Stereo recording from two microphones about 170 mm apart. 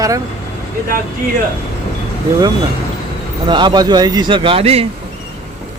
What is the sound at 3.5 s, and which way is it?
Speech, 25° right (ahead or behind).